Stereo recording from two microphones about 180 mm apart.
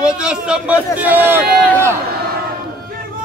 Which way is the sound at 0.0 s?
5° right (ahead or behind).